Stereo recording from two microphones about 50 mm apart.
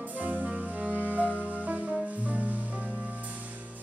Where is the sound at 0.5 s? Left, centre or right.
Centre.